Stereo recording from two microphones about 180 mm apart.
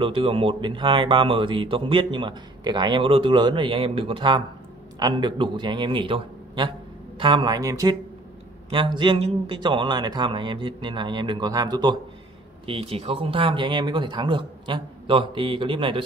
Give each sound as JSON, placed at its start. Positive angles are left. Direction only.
{"t": 0.0, "sound": "speech", "side_deg": -30}